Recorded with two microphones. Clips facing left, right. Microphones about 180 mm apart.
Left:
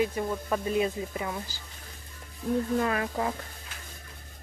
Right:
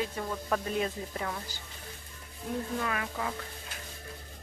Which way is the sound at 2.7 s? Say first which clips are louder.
Left 6 dB; 40° left (ahead or behind).